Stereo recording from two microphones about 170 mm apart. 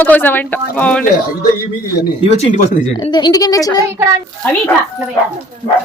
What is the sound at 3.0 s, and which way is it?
Speech, 25° left (ahead or behind).